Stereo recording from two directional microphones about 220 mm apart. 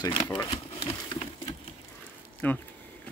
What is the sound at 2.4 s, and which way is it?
Speech, 10° left (ahead or behind).